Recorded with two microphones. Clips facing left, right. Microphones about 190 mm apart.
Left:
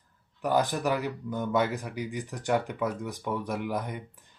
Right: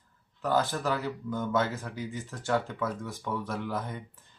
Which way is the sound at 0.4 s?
15° left (ahead or behind).